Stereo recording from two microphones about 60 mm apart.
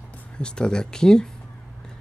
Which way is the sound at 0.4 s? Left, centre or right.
Centre.